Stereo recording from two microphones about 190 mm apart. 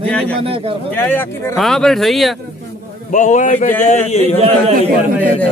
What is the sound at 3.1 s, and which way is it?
Speech, 40° left (ahead or behind).